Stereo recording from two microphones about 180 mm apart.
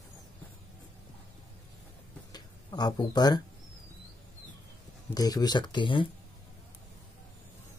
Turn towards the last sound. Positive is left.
turn(degrees=25)  # may be behind; listen again after turning